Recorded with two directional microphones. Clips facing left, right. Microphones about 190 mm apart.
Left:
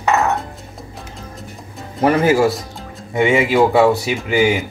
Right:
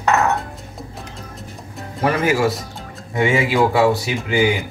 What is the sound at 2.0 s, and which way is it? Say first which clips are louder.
Speech: left 4 dB; 35° left (ahead or behind).